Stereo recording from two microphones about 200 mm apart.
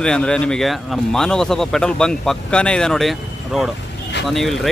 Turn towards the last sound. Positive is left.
turn(degrees=0)  # may be behind; listen again after turning